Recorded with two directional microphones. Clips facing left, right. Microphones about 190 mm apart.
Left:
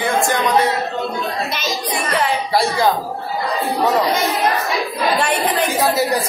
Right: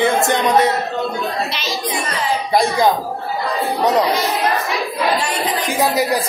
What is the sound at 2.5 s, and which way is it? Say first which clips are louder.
Speech: right 3 dB; 15° right (ahead or behind).